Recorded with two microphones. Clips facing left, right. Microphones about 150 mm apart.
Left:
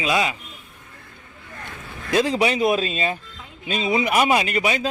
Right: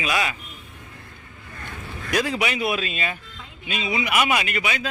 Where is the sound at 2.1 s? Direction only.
25° left (ahead or behind).